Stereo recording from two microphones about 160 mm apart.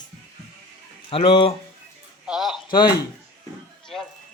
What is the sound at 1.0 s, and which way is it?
Speech, 35° left (ahead or behind).